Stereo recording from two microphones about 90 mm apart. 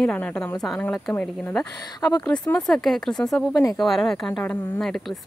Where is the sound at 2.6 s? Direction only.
5° left (ahead or behind).